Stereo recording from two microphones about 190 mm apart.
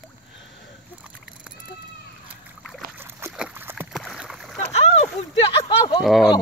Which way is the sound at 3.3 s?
10° right (ahead or behind).